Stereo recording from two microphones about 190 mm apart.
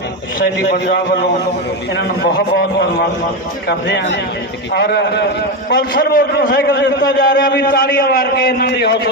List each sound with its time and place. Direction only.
2.0 s a man's voice: 60° left (ahead or behind)